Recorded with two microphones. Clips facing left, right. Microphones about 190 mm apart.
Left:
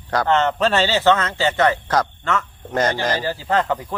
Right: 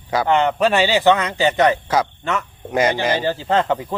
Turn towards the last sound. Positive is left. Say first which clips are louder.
# right 2 dB
turn(degrees=-20)  # may be behind; listen again after turning